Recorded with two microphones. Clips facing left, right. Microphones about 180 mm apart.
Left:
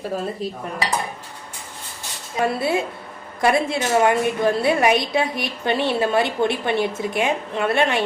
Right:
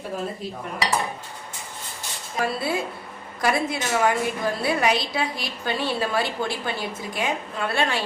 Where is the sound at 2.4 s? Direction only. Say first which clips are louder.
Left 4 dB; 25° left (ahead or behind).